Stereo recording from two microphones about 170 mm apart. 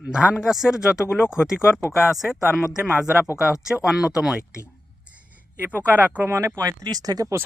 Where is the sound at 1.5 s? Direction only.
15° left (ahead or behind).